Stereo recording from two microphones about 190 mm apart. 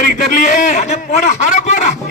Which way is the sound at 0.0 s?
45° left (ahead or behind).